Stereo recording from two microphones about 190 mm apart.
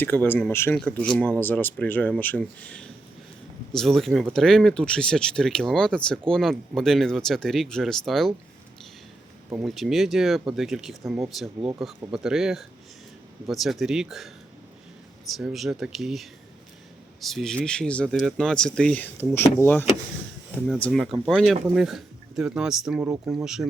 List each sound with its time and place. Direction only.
0.0 s speech: 10° left (ahead or behind)
9.5 s speech: centre (ahead or behind)
15.3 s speech: centre (ahead or behind)
20.7 s speech: 5° left (ahead or behind)